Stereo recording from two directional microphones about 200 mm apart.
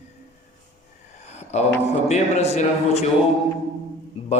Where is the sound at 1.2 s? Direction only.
35° left (ahead or behind).